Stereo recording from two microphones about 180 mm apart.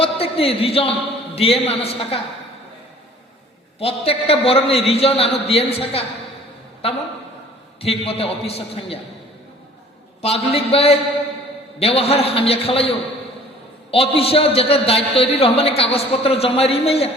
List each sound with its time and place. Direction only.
0.0 s a man's voice: 30° left (ahead or behind)
3.8 s a man's voice: 30° left (ahead or behind)
7.8 s a man's voice: 35° left (ahead or behind)
10.2 s a man's voice: 35° left (ahead or behind)